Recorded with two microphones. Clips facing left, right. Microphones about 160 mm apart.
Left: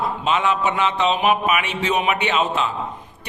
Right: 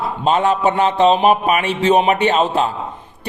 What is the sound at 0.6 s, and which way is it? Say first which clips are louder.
A man's voice: right 6 dB; 30° right (ahead or behind).